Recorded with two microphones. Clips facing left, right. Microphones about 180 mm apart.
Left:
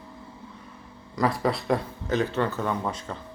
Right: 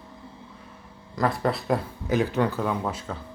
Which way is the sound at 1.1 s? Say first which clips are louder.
Even; centre (ahead or behind).